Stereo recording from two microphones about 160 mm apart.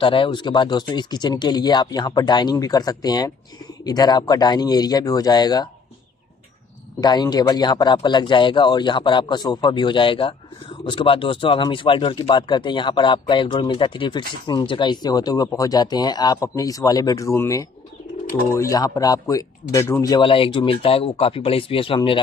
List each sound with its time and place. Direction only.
0.0 s speech: 30° left (ahead or behind)
7.0 s speech: 25° left (ahead or behind)
20.2 s speech: 35° left (ahead or behind)